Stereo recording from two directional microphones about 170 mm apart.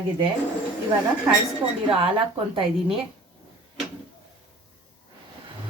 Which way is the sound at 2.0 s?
30° right (ahead or behind).